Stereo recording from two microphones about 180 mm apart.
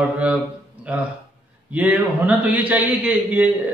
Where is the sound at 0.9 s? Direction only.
10° right (ahead or behind).